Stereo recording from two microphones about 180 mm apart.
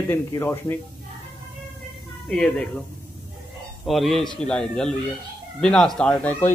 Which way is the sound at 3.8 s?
Centre (ahead or behind).